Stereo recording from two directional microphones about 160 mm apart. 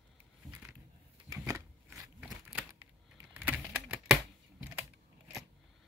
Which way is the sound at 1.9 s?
5° right (ahead or behind).